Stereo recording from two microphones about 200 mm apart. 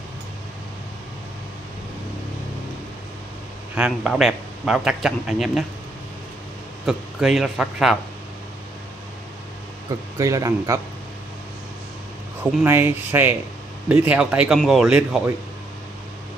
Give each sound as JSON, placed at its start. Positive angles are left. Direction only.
{"t": 3.7, "sound": "speech", "side_deg": -5}
{"t": 6.9, "sound": "speech", "side_deg": -5}
{"t": 9.8, "sound": "speech", "side_deg": -15}
{"t": 12.6, "sound": "speech", "side_deg": -10}